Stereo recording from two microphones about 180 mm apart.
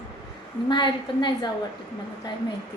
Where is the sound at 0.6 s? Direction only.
25° left (ahead or behind).